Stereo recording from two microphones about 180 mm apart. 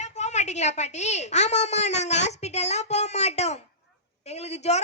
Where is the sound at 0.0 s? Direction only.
40° left (ahead or behind).